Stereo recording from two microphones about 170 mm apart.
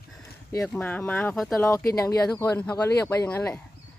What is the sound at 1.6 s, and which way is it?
Speech, 15° left (ahead or behind).